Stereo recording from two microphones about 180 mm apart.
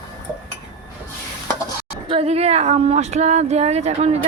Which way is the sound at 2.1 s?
35° right (ahead or behind).